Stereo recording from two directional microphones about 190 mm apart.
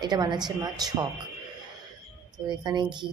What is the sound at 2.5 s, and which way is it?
Speech, 25° right (ahead or behind).